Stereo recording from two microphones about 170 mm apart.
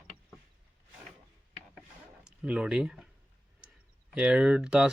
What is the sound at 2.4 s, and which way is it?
Speech, 5° right (ahead or behind).